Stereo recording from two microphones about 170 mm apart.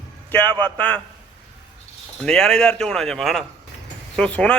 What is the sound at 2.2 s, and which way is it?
Speech, 5° left (ahead or behind).